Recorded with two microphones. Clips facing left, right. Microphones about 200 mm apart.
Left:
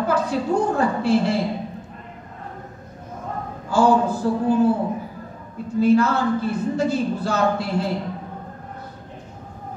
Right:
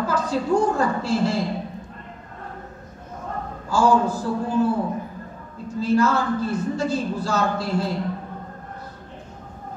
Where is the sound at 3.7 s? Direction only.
60° left (ahead or behind).